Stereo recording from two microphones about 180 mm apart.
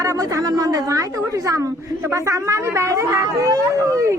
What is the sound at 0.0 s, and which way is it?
Speech, 15° right (ahead or behind).